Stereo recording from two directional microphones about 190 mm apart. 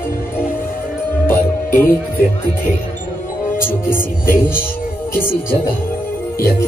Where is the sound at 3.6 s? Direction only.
10° left (ahead or behind).